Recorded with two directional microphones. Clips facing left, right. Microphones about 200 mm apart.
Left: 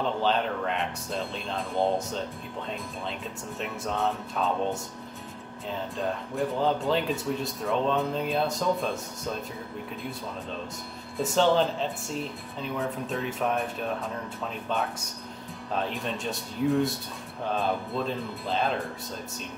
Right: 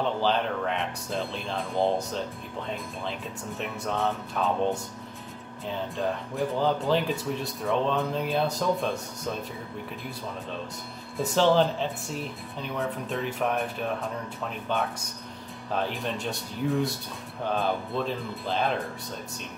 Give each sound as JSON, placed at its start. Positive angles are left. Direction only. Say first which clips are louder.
{"t": 0.2, "sound": "speech", "louder": "even", "side_deg": 0}
{"t": 5.7, "sound": "speech", "louder": "right 1 dB", "side_deg": 0}
{"t": 11.1, "sound": "speech", "louder": "right 1 dB", "side_deg": 0}
{"t": 15.7, "sound": "speech", "louder": "right 1 dB", "side_deg": 0}